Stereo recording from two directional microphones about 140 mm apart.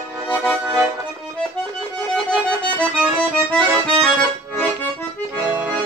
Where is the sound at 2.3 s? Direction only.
10° left (ahead or behind).